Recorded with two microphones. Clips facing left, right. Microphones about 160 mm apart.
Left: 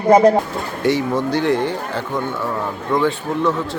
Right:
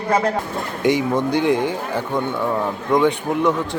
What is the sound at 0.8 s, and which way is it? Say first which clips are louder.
Speech: even; 15° right (ahead or behind).